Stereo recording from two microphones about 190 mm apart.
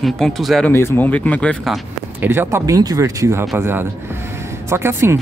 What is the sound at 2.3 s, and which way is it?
Speech, 10° right (ahead or behind).